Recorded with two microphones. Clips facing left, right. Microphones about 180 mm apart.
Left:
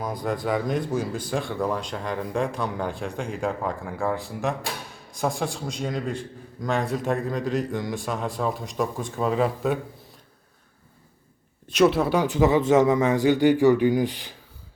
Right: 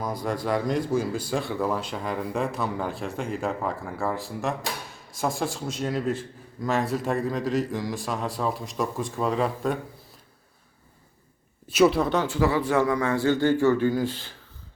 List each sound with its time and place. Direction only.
0.0 s a man's voice: centre (ahead or behind)
11.7 s speech: centre (ahead or behind); by 14.3 s 15° left (ahead or behind)